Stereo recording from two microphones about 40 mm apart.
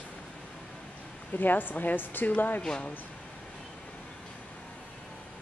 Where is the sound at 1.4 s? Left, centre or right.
Left.